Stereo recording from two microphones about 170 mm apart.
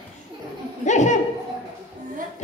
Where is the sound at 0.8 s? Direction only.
45° left (ahead or behind).